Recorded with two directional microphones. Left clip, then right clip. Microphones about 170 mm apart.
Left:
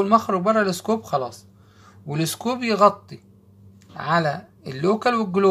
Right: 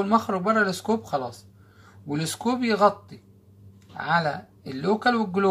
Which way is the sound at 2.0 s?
50° left (ahead or behind).